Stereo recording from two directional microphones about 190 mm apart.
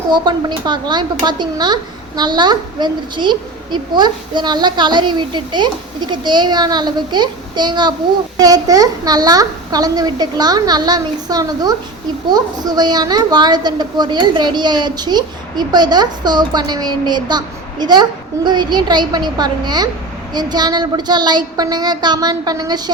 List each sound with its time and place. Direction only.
0.1 s speech: 25° right (ahead or behind)